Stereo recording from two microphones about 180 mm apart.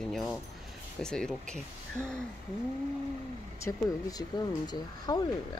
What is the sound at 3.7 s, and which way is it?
Speech, 20° left (ahead or behind).